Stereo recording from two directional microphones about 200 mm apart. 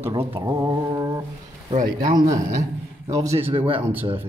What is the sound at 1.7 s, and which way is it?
Speech, 40° right (ahead or behind).